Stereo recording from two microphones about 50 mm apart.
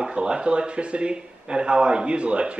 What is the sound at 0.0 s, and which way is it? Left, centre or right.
Speech, centre.